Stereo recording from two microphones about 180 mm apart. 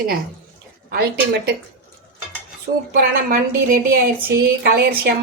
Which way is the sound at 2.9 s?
55° right (ahead or behind).